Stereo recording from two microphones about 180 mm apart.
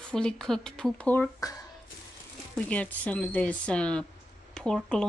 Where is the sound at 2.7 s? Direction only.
10° left (ahead or behind).